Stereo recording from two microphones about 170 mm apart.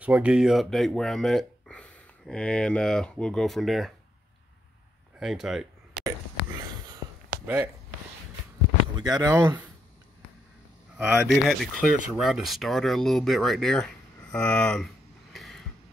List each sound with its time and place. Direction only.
0.0 s speech: 10° right (ahead or behind)
5.2 s speech: centre (ahead or behind)
7.4 s speech: 10° right (ahead or behind)
8.9 s speech: 20° right (ahead or behind)
11.2 s speech: centre (ahead or behind)
15.3 s a sound: centre (ahead or behind)